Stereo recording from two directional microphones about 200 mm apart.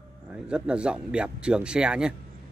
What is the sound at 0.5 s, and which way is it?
Speech, 5° right (ahead or behind).